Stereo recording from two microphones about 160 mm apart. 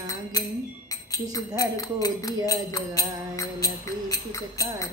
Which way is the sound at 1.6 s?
20° left (ahead or behind).